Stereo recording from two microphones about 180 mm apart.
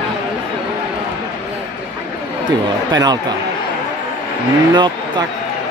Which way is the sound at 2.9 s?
20° right (ahead or behind).